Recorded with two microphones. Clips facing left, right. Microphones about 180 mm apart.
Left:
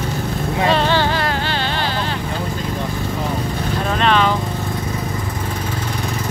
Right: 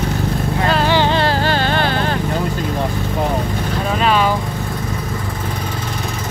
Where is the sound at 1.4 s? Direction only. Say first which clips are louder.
Right 5 dB; 45° right (ahead or behind).